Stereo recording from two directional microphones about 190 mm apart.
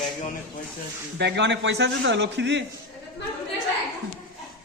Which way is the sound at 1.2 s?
65° right (ahead or behind).